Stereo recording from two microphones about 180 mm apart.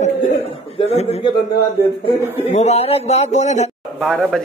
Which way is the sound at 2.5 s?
40° left (ahead or behind).